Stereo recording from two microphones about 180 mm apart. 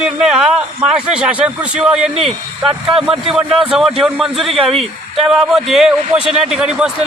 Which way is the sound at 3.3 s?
5° right (ahead or behind).